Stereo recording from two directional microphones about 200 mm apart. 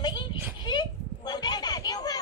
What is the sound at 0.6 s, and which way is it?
Children playing, 20° left (ahead or behind).